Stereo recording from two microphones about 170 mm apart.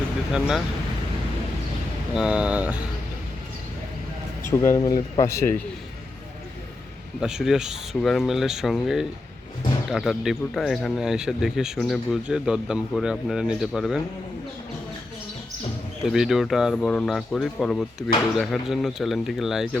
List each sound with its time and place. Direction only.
0.3 s speech: 5° right (ahead or behind)
2.1 s speech: 5° right (ahead or behind)
4.4 s speech: 15° left (ahead or behind)
7.2 s speech: 5° right (ahead or behind)
16.0 s speech: centre (ahead or behind)